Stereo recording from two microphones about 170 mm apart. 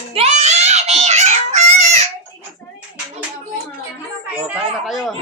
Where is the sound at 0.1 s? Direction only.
40° right (ahead or behind).